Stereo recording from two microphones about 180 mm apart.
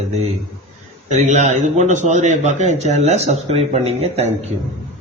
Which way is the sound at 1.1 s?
40° right (ahead or behind).